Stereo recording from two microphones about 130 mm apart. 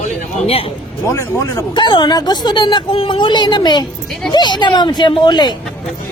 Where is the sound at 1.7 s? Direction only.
35° left (ahead or behind).